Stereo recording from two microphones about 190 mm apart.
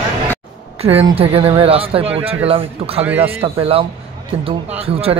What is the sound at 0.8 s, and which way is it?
Speech, 30° right (ahead or behind).